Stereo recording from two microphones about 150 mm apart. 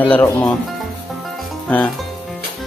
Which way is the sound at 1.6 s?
10° left (ahead or behind).